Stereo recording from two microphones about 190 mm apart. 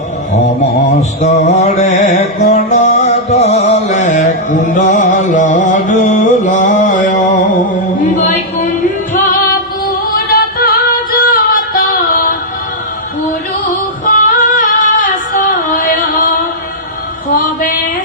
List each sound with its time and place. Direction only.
1.2 s music: 35° left (ahead or behind)
9.1 s music: 45° left (ahead or behind)
14.0 s female singing: 45° left (ahead or behind)